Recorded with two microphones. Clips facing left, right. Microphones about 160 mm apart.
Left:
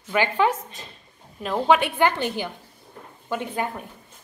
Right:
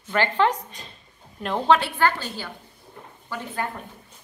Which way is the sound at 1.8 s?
20° left (ahead or behind).